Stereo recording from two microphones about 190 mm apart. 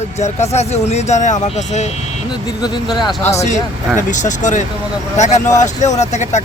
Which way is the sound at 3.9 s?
40° left (ahead or behind).